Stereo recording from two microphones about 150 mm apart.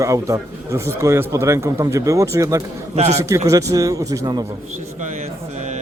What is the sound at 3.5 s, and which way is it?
Speech, 20° right (ahead or behind).